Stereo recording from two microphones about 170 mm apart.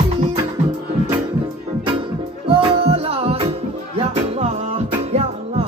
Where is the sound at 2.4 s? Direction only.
35° right (ahead or behind).